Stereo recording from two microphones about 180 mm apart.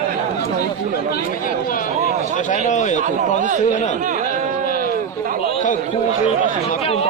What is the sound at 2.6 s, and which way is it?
Speech, 40° left (ahead or behind).